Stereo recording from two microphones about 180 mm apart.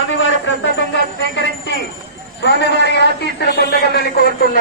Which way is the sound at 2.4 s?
75° left (ahead or behind).